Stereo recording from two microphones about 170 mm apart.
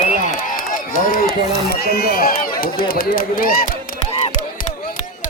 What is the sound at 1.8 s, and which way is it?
Speech, 65° left (ahead or behind).